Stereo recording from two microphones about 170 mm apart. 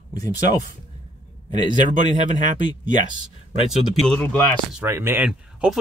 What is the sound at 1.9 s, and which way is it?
Speech, 45° right (ahead or behind).